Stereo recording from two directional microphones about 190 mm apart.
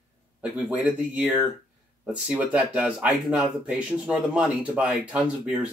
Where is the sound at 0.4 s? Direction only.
5° right (ahead or behind).